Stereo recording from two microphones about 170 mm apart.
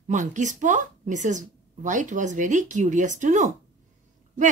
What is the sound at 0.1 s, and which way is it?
A woman's voice, 45° right (ahead or behind).